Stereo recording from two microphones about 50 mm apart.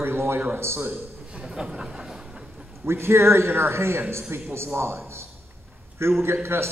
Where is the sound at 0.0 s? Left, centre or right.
Right.